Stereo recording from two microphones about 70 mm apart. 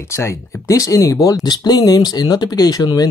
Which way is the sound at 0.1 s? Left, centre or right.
Left.